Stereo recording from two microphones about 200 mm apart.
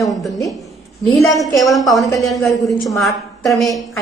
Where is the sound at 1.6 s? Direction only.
Centre (ahead or behind).